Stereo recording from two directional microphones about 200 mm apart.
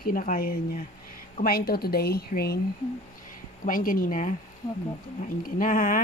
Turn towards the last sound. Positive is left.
turn(degrees=40)  # may be behind; listen again after turning